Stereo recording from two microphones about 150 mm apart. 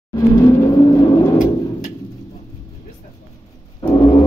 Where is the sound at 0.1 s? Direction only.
25° left (ahead or behind).